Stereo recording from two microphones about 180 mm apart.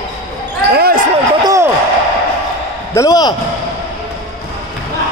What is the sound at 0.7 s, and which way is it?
Basketball bounce, 55° right (ahead or behind).